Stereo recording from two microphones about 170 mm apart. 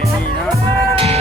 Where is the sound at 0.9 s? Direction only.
35° right (ahead or behind).